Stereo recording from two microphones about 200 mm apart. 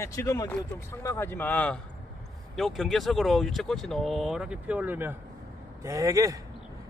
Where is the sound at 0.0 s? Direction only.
15° left (ahead or behind).